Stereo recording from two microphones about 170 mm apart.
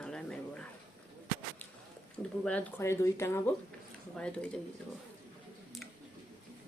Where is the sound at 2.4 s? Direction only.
10° left (ahead or behind).